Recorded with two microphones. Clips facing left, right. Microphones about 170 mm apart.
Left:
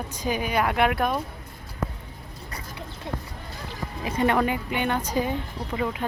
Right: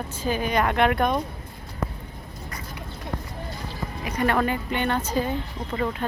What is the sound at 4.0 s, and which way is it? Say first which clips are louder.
Speech: left 1 dB; 25° left (ahead or behind).